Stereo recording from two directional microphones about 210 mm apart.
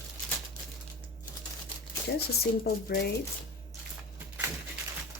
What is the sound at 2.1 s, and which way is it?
Speech, 50° left (ahead or behind).